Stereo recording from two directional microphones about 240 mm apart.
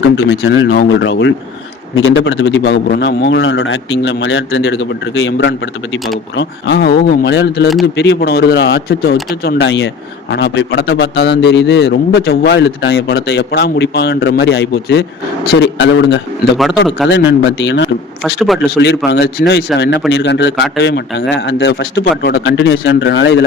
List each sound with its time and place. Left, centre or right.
0.3 s a man's voice: left
16.6 s a man's voice: centre
17.6 s a man's voice: left
18.2 s a man's voice: centre
18.8 s a man's voice: left